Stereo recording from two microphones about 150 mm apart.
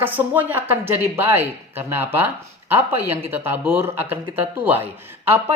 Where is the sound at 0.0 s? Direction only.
10° right (ahead or behind).